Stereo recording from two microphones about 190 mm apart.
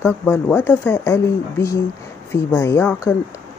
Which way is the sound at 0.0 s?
10° left (ahead or behind).